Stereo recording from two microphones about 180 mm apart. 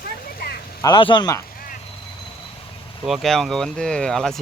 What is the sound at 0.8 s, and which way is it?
Speech, 25° left (ahead or behind).